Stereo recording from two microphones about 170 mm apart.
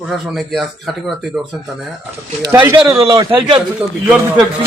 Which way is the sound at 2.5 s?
10° right (ahead or behind).